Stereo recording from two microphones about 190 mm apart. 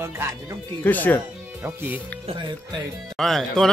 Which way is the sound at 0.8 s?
10° left (ahead or behind).